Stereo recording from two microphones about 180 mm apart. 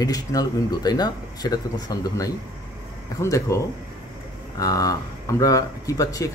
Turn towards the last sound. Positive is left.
turn(degrees=20)  # may be behind; listen again after turning